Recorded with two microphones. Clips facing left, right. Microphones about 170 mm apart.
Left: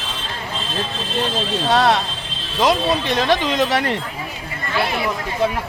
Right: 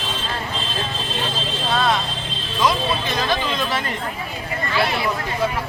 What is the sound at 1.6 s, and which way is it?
Vehicle, 75° left (ahead or behind).